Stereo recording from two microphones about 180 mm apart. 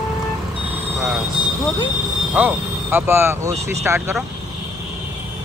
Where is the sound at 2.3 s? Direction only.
10° right (ahead or behind).